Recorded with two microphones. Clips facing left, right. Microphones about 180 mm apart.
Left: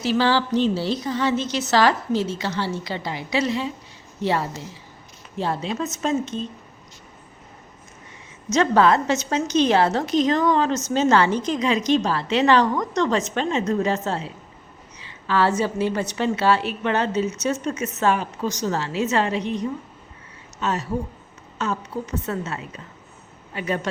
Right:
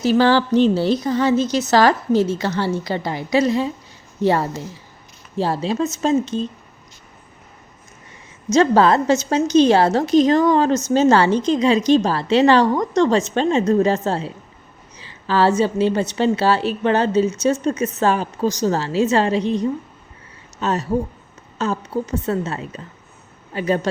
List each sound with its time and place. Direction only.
0.0 s a woman's voice: 45° right (ahead or behind)
5.4 s a woman's voice: 35° right (ahead or behind)
8.5 s a woman's voice: 35° right (ahead or behind)